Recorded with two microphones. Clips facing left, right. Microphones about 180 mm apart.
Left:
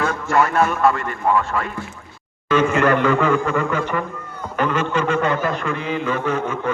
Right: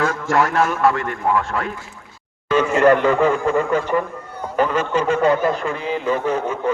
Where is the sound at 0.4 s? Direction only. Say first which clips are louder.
Even; 75° right (ahead or behind).